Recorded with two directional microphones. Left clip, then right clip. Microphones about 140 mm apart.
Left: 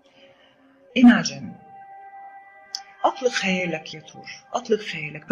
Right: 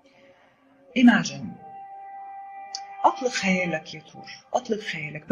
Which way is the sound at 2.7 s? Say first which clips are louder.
Right 1 dB; 30° left (ahead or behind).